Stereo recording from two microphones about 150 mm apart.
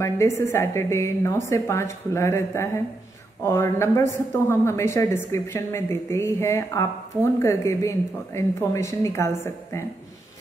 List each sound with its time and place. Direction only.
0.0 s a woman's voice: 20° left (ahead or behind)